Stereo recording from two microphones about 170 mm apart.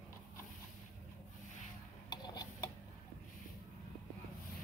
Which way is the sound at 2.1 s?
25° left (ahead or behind).